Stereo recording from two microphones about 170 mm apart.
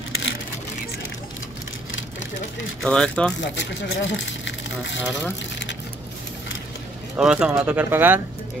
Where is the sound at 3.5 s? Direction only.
90° left.